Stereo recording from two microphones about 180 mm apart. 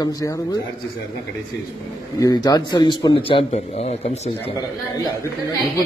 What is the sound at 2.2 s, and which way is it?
A man's voice, 20° left (ahead or behind).